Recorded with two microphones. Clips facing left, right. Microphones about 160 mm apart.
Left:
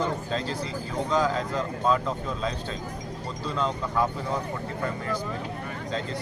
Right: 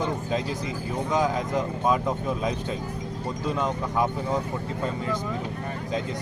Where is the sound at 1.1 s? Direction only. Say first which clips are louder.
Right 1 dB; 15° right (ahead or behind).